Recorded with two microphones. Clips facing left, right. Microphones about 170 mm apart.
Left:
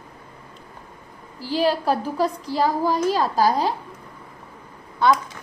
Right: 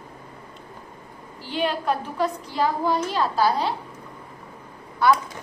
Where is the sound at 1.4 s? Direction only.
35° left (ahead or behind).